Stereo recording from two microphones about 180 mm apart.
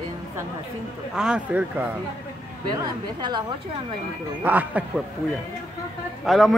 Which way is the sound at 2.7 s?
25° right (ahead or behind).